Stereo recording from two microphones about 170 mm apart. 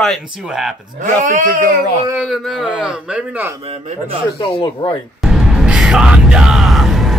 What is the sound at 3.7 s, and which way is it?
Speech, 35° right (ahead or behind).